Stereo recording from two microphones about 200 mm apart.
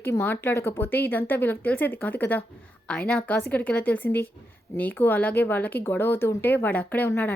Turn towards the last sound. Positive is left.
turn(degrees=10)  # may be behind; listen again after turning